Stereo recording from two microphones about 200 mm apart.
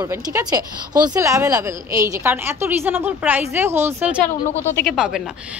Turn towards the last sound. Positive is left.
turn(degrees=0)  # may be behind; listen again after turning